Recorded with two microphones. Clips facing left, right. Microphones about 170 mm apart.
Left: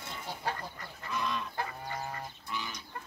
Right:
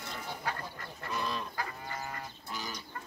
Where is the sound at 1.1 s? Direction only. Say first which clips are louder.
Left 1 dB; 35° right (ahead or behind).